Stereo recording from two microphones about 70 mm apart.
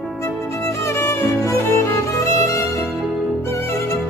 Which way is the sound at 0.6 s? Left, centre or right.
Left.